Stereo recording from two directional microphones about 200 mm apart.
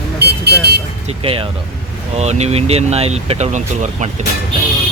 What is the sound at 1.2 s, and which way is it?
Speech, 30° right (ahead or behind).